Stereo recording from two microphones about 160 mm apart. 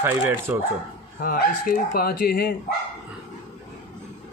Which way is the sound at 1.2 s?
65° left (ahead or behind).